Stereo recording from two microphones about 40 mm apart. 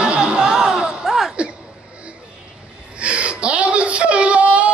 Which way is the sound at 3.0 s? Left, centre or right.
Right.